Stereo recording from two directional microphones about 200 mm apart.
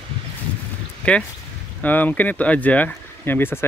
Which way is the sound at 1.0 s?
5° left (ahead or behind).